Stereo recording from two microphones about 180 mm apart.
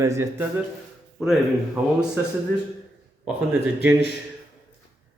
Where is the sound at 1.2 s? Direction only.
5° right (ahead or behind).